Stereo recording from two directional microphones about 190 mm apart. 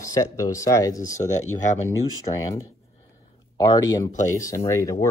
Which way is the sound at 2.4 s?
20° left (ahead or behind).